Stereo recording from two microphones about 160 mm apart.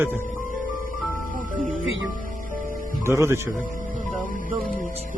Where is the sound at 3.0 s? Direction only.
15° right (ahead or behind).